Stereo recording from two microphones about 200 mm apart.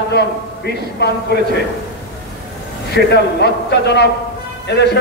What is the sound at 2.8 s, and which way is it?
A man's voice, 55° left (ahead or behind).